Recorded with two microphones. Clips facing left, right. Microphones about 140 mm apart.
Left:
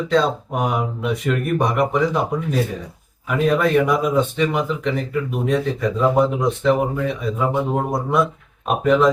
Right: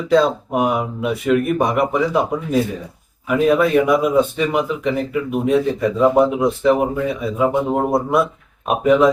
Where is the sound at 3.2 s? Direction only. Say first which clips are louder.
Right 3 dB; 5° right (ahead or behind).